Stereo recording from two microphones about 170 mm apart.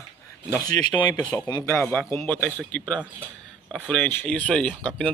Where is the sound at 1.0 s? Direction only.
25° left (ahead or behind).